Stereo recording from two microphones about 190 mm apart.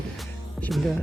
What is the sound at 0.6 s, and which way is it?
Speech, centre (ahead or behind).